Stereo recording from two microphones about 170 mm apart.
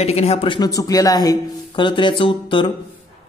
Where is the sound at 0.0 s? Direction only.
35° left (ahead or behind).